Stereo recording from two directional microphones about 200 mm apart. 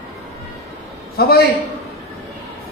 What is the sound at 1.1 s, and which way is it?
Speech, 50° left (ahead or behind).